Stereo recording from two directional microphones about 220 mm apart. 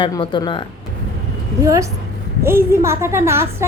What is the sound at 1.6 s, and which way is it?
A child's voice, 15° right (ahead or behind).